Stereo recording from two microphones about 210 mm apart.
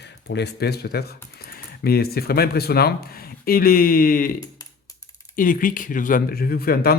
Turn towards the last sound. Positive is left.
turn(degrees=45)  # may be behind; listen again after turning